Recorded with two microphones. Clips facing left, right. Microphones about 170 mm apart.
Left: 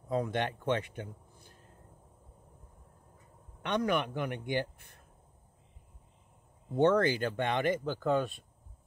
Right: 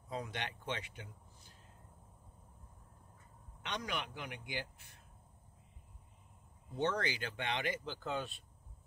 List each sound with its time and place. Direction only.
0.1 s a man's voice: 50° left (ahead or behind)
3.6 s a man's voice: 55° left (ahead or behind)
6.7 s speech: 55° left (ahead or behind)